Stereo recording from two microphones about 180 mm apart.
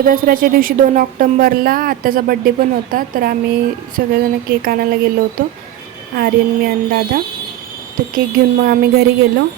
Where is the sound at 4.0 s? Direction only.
60° right (ahead or behind).